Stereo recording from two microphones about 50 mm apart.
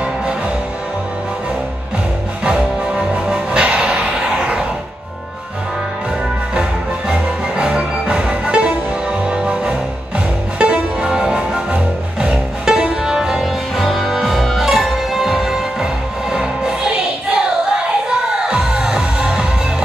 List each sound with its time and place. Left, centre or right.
3.3 s music: centre
7.1 s music: centre
18.5 s music: centre